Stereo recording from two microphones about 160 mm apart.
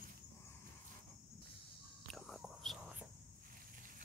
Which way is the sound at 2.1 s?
Centre (ahead or behind).